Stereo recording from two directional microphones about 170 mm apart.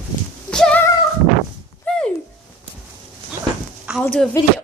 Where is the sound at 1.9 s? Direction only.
10° left (ahead or behind).